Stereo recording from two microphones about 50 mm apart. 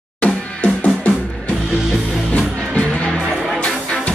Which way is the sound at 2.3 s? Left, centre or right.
Left.